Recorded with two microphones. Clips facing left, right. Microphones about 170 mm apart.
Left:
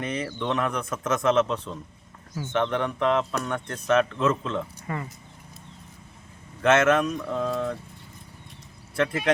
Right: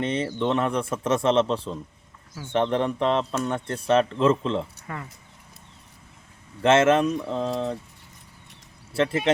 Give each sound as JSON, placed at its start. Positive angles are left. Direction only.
{"t": 0.0, "sound": "a man's voice", "side_deg": -30}
{"t": 4.9, "sound": "speech", "side_deg": 0}
{"t": 6.6, "sound": "a man's voice", "side_deg": -30}
{"t": 9.0, "sound": "a man's voice", "side_deg": -25}